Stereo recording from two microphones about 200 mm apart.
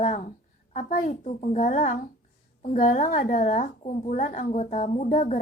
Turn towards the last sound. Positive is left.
turn(degrees=40)  # may be behind; listen again after turning